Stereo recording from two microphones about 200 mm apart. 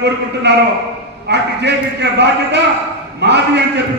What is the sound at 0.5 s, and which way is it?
A man's voice, 60° right (ahead or behind).